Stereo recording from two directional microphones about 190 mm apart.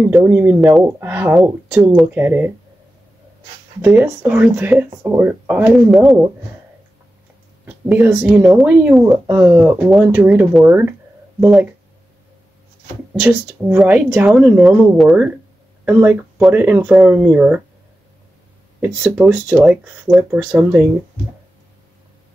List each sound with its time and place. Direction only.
0.0 s speech: 10° right (ahead or behind)
3.8 s speech: 10° right (ahead or behind)
7.6 s speech: 10° right (ahead or behind)
9.3 s speech: 15° right (ahead or behind)
9.6 s speech: 5° right (ahead or behind)
13.2 s speech: 10° right (ahead or behind)
18.8 s speech: 10° right (ahead or behind)